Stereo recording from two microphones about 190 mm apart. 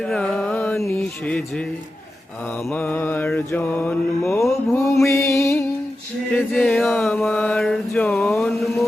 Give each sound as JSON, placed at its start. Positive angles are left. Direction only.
{"t": 0.0, "sound": "music", "side_deg": 5}
{"t": 0.9, "sound": "mantra", "side_deg": 5}
{"t": 2.6, "sound": "mantra", "side_deg": 10}
{"t": 4.7, "sound": "mantra", "side_deg": 15}
{"t": 5.0, "sound": "music", "side_deg": 15}
{"t": 6.3, "sound": "mantra", "side_deg": 5}